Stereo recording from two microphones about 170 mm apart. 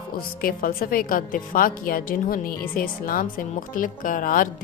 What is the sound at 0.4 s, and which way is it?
A woman's voice, 60° left (ahead or behind).